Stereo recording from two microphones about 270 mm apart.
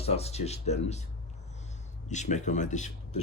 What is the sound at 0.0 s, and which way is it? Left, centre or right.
Speech, left.